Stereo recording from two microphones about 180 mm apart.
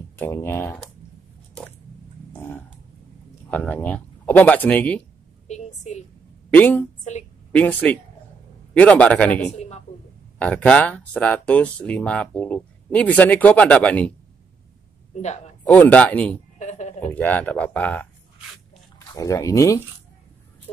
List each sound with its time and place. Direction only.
0.2 s speech: 15° left (ahead or behind)
2.3 s dog: 10° left (ahead or behind)
3.4 s speech: 10° left (ahead or behind)
5.5 s a woman's voice: 40° left (ahead or behind)
6.5 s speech: 10° left (ahead or behind)
15.2 s a man's voice: 40° left (ahead or behind)
15.6 s speech: 10° left (ahead or behind)
16.5 s a sound: 40° left (ahead or behind)
17.1 s speech: 10° left (ahead or behind)